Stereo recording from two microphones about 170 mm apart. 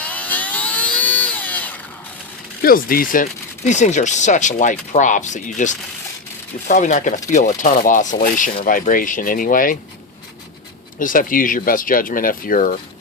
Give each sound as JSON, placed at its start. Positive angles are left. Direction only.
{"t": 0.0, "sound": "a sound", "side_deg": 10}
{"t": 2.6, "sound": "speech", "side_deg": 60}
{"t": 11.0, "sound": "speech", "side_deg": 55}